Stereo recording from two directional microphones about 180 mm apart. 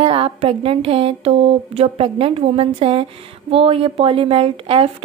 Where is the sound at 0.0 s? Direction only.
30° right (ahead or behind).